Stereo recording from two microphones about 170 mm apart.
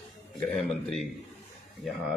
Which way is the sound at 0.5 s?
Centre (ahead or behind).